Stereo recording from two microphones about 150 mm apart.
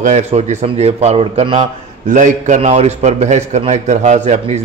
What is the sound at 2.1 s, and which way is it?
A man's voice, 55° right (ahead or behind).